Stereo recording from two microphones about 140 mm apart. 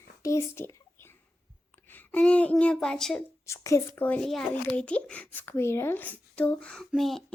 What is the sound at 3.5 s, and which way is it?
Speech, 20° left (ahead or behind).